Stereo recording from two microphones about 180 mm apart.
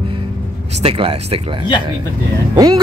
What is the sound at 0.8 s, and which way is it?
Speech, 30° right (ahead or behind).